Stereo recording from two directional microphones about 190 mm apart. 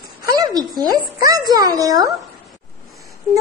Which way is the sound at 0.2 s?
20° right (ahead or behind).